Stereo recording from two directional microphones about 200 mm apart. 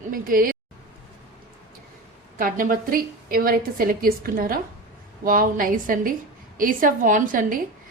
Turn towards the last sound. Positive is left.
turn(degrees=-40)  # may be behind; listen again after turning